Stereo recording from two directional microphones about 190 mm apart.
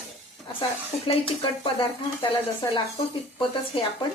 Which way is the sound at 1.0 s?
30° left (ahead or behind).